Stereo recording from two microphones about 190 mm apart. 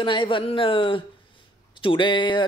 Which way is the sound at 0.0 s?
25° left (ahead or behind).